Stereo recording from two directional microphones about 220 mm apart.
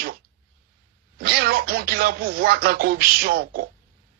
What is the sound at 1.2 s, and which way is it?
Speech, 45° right (ahead or behind).